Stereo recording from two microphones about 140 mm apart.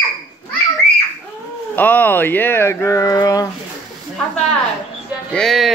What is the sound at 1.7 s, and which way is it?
Speech, 10° left (ahead or behind).